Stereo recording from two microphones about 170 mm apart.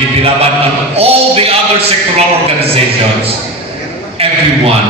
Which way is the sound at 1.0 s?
35° right (ahead or behind).